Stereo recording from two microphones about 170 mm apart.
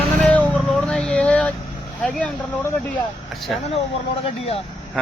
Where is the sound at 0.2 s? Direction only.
5° left (ahead or behind).